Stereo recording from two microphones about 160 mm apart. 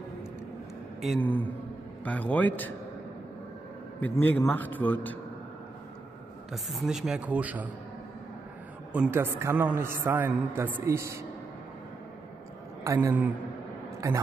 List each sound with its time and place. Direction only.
1.2 s speech: 10° left (ahead or behind)
4.0 s speech: 10° left (ahead or behind)
6.5 s speech: centre (ahead or behind)
8.9 s a man's voice: 10° right (ahead or behind)
12.8 s a man's voice: 20° right (ahead or behind)